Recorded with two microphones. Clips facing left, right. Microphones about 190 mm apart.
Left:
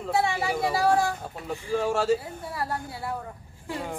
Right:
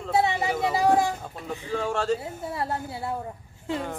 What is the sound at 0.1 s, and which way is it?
Music, 20° right (ahead or behind).